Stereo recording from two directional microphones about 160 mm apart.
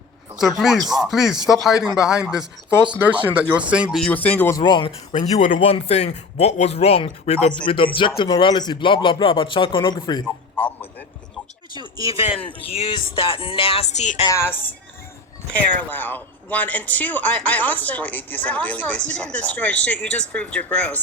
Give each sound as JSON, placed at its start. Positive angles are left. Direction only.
{"t": 0.3, "sound": "speech", "side_deg": 0}
{"t": 3.9, "sound": "speech", "side_deg": 5}
{"t": 4.5, "sound": "speech", "side_deg": 30}
{"t": 5.1, "sound": "speech", "side_deg": 45}
{"t": 11.7, "sound": "speech", "side_deg": -25}
{"t": 12.6, "sound": "speech", "side_deg": 40}
{"t": 14.3, "sound": "speech", "side_deg": 15}
{"t": 15.9, "sound": "speech", "side_deg": 10}